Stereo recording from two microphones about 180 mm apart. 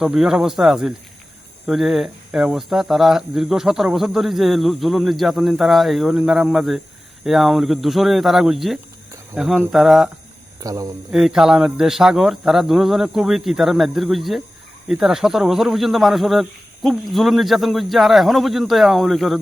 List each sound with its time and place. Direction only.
0.0 s speech: 5° right (ahead or behind)
10.6 s speech: 20° right (ahead or behind)
11.1 s speech: 5° right (ahead or behind)